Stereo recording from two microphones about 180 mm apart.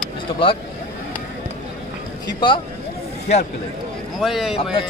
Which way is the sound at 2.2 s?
25° left (ahead or behind).